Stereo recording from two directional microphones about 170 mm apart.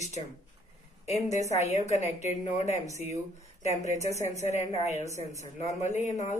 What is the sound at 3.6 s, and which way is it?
A woman's voice, 40° left (ahead or behind).